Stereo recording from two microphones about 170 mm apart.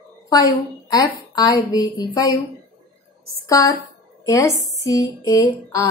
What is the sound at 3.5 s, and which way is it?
A woman's voice, 20° left (ahead or behind).